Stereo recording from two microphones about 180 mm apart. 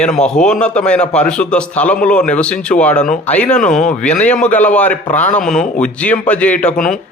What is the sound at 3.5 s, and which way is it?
Speech, 45° left (ahead or behind).